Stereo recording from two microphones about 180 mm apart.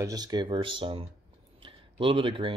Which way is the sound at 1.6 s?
30° right (ahead or behind).